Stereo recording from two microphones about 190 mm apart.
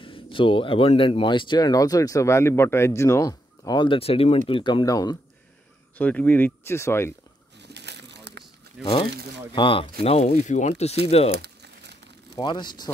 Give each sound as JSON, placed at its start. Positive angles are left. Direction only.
{"t": 0.0, "sound": "speech", "side_deg": 25}
{"t": 5.9, "sound": "speech", "side_deg": 10}
{"t": 7.5, "sound": "crushing", "side_deg": -65}
{"t": 8.8, "sound": "speech", "side_deg": 30}
{"t": 11.3, "sound": "crumpling", "side_deg": -60}
{"t": 12.4, "sound": "speech", "side_deg": 25}